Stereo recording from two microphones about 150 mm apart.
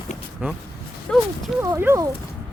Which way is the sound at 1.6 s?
20° right (ahead or behind).